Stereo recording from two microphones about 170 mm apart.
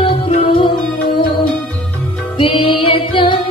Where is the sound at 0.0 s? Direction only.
30° left (ahead or behind).